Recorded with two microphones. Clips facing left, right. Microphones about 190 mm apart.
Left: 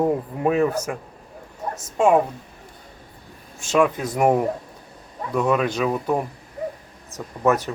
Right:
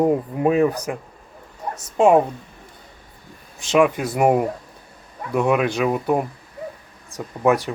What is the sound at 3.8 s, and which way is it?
Speech, 10° right (ahead or behind).